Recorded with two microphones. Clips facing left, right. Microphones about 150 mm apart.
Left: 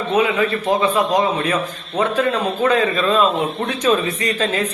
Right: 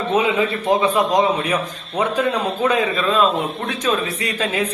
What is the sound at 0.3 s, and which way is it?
A man's voice, 20° right (ahead or behind).